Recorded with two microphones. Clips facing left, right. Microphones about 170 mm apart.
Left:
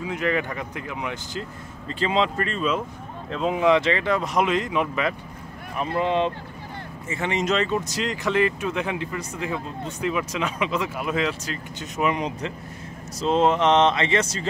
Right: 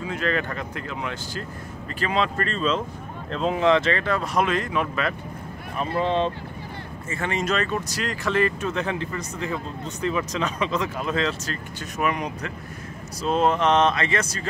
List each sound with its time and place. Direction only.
0.0 s speech: 15° left (ahead or behind)